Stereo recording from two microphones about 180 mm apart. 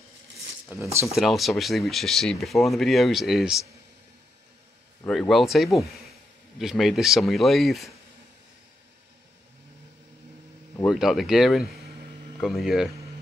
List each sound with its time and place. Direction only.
0.7 s speech: 10° right (ahead or behind)
5.0 s speech: 5° left (ahead or behind)
10.9 s speech: centre (ahead or behind)